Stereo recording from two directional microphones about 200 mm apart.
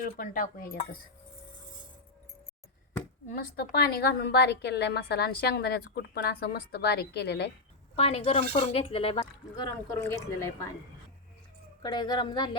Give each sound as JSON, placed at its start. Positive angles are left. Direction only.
{"t": 0.0, "sound": "a woman's voice", "side_deg": 45}
{"t": 3.2, "sound": "a woman's voice", "side_deg": 45}
{"t": 7.9, "sound": "speech", "side_deg": 30}
{"t": 9.2, "sound": "speech", "side_deg": 15}
{"t": 11.8, "sound": "speech", "side_deg": 20}